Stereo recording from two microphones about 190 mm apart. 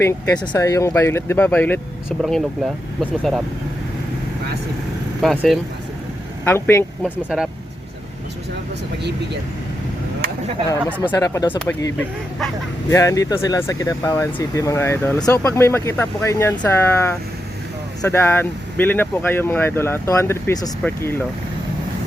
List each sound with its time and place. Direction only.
0.0 s speech: 20° left (ahead or behind)
2.0 s speech: 5° right (ahead or behind)
5.2 s speech: centre (ahead or behind)
6.4 s speech: 10° left (ahead or behind)
7.0 s speech: centre (ahead or behind)
10.7 s speech: 10° left (ahead or behind)
11.1 s speech: 20° left (ahead or behind)